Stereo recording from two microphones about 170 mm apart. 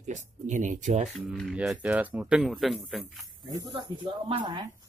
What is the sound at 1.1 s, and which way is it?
Speech, centre (ahead or behind).